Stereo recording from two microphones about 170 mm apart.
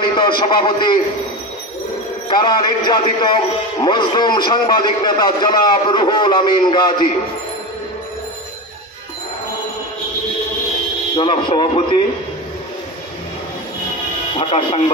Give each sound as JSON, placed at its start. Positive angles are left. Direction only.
{"t": 0.0, "sound": "a man's voice", "side_deg": 30}
{"t": 2.2, "sound": "a man's voice", "side_deg": 25}
{"t": 11.1, "sound": "a man's voice", "side_deg": 30}
{"t": 14.3, "sound": "a man's voice", "side_deg": 30}